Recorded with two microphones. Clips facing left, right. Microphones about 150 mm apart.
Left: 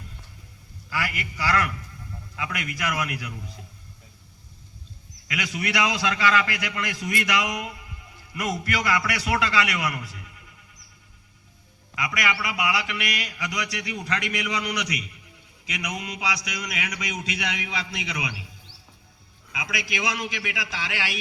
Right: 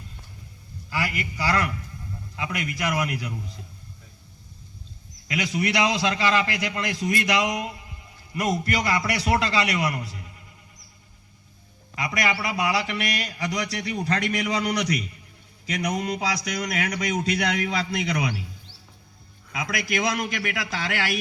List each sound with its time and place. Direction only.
0.9 s a man's voice: 25° right (ahead or behind)
5.3 s a man's voice: 25° right (ahead or behind)
11.9 s a man's voice: 30° right (ahead or behind)
19.5 s a man's voice: 45° right (ahead or behind)